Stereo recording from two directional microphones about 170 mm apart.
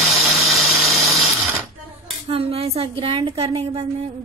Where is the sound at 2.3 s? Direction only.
35° right (ahead or behind).